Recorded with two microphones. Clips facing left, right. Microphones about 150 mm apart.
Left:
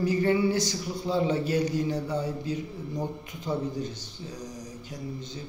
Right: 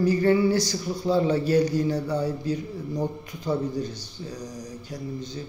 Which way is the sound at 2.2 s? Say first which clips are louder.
Right 4 dB; 40° right (ahead or behind).